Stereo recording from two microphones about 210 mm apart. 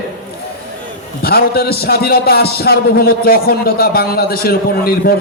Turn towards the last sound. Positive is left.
turn(degrees=45)  # may be behind; listen again after turning